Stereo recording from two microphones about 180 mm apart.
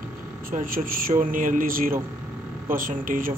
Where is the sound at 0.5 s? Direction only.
50° right (ahead or behind).